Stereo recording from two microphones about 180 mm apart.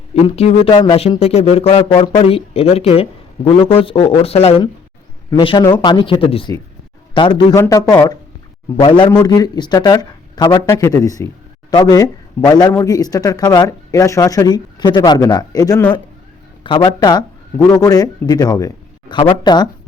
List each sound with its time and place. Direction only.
0.1 s speech: 35° left (ahead or behind)